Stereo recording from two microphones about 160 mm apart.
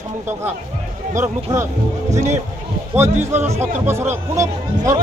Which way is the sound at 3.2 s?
15° right (ahead or behind).